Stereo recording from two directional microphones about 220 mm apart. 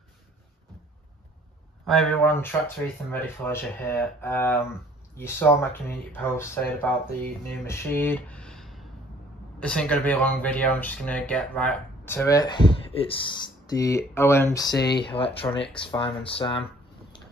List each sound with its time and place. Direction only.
1.9 s speech: 5° left (ahead or behind)
14.8 s speech: 50° left (ahead or behind)
15.0 s speech: 25° left (ahead or behind)